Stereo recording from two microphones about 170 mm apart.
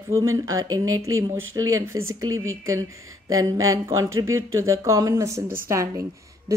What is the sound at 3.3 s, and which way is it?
Speech, 20° right (ahead or behind).